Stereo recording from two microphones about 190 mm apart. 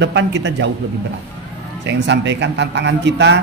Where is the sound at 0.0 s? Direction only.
65° right (ahead or behind).